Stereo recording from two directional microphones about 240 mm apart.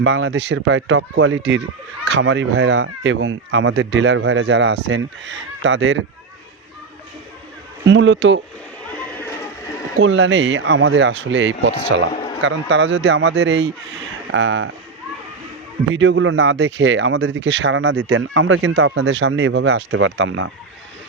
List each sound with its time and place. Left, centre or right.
0.0 s speech: right
7.9 s speech: right
10.0 s speech: right
15.9 s speech: right